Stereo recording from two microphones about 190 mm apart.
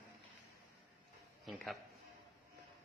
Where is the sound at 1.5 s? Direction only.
Centre (ahead or behind).